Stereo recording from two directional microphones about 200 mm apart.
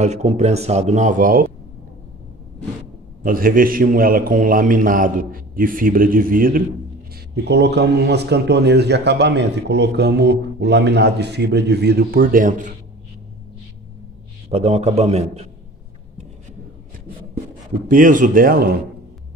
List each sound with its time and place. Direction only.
0.0 s speech: 35° right (ahead or behind)
3.3 s a man's voice: 45° right (ahead or behind)
7.4 s speech: 60° right (ahead or behind); by 12.7 s 40° right (ahead or behind)
14.5 s speech: 30° right (ahead or behind)
17.8 s a man's voice: 40° right (ahead or behind)